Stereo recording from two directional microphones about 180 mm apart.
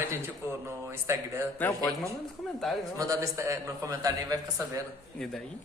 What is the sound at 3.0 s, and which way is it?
A man's voice, 15° right (ahead or behind).